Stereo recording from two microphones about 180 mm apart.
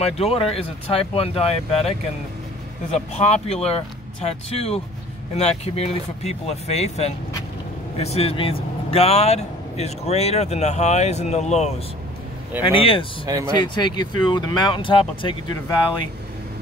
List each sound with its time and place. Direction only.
0.0 s speech: 35° left (ahead or behind)